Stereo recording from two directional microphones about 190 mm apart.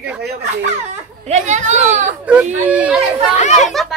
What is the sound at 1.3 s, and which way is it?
Speech, 40° right (ahead or behind).